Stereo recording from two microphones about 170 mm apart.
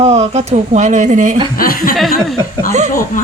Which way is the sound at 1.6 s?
55° left (ahead or behind).